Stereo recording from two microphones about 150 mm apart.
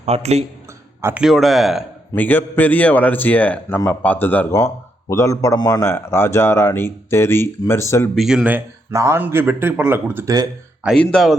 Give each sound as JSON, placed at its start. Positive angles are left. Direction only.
{"t": 0.0, "sound": "a man's voice", "side_deg": -45}
{"t": 1.0, "sound": "speech", "side_deg": -5}
{"t": 2.1, "sound": "speech", "side_deg": 10}
{"t": 8.1, "sound": "speech", "side_deg": 0}
{"t": 8.4, "sound": "speech", "side_deg": -15}
{"t": 10.9, "sound": "speech", "side_deg": 5}